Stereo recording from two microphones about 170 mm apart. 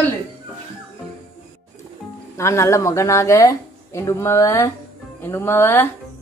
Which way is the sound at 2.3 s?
15° left (ahead or behind).